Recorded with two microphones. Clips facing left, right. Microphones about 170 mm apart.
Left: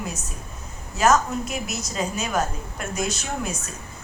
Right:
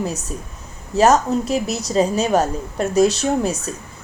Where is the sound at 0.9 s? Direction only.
35° right (ahead or behind).